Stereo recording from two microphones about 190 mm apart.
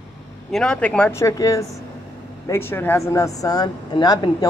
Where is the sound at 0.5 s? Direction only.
5° left (ahead or behind).